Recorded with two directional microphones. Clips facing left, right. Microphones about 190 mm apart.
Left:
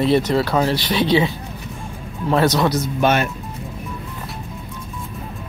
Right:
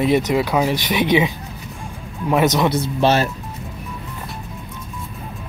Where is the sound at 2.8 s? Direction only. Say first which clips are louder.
Right 1 dB; 30° right (ahead or behind).